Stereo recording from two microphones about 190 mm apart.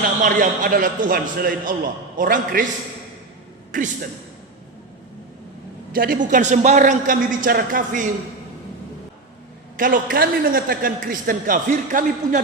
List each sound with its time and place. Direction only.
0.2 s a man's voice: 45° right (ahead or behind)
3.7 s a man's voice: 45° right (ahead or behind)
5.9 s a man's voice: 50° right (ahead or behind)
9.7 s a man's voice: 45° right (ahead or behind)